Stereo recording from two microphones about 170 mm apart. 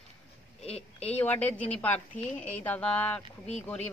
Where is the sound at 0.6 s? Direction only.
35° left (ahead or behind).